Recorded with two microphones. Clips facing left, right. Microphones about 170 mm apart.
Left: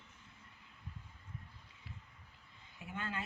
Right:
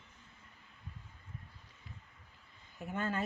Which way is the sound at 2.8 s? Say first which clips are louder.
Right 6 dB; 45° right (ahead or behind).